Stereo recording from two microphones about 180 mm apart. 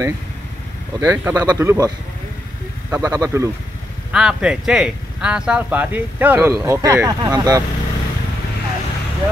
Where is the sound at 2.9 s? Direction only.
15° right (ahead or behind).